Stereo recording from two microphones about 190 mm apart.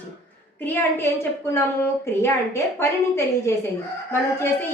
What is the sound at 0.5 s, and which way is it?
A woman's voice, 10° left (ahead or behind).